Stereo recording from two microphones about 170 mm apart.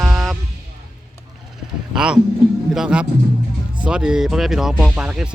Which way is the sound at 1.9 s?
5° right (ahead or behind).